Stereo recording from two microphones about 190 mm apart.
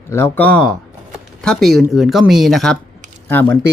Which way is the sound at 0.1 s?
10° left (ahead or behind).